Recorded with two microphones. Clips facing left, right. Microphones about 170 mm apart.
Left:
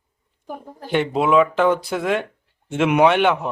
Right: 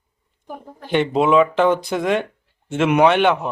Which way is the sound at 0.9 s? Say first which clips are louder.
Right 2 dB; 5° left (ahead or behind).